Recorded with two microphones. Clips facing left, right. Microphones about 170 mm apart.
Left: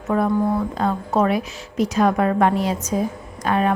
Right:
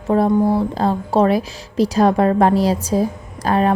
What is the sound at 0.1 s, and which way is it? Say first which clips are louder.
A woman's voice: right 4 dB; 30° right (ahead or behind).